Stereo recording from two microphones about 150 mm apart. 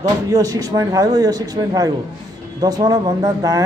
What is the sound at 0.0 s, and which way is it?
Speech, 25° right (ahead or behind).